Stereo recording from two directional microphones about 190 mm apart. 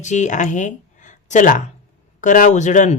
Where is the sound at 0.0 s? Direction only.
40° left (ahead or behind).